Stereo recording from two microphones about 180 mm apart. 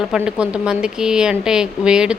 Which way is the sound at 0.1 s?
5° right (ahead or behind).